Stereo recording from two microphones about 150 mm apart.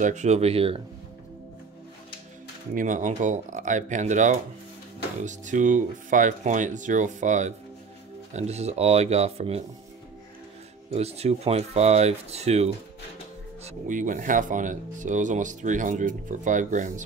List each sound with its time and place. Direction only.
0.0 s speech: 50° right (ahead or behind)
2.7 s speech: 60° right (ahead or behind); by 9.6 s 45° right (ahead or behind)
10.9 s speech: 45° right (ahead or behind)
13.7 s speech: 60° right (ahead or behind)